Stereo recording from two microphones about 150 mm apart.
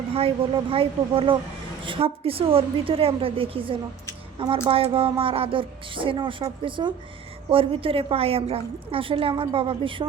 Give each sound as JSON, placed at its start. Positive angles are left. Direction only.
{"t": 0.1, "sound": "speech", "side_deg": -40}